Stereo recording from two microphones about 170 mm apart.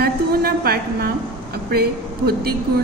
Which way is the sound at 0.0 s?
65° right (ahead or behind).